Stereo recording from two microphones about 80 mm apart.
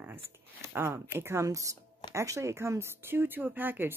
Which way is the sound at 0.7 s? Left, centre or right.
Right.